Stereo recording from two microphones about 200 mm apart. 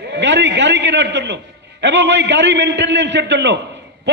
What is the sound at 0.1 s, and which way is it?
A man's voice, 60° right (ahead or behind).